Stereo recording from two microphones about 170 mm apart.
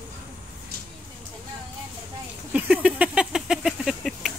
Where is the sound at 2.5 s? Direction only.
5° right (ahead or behind).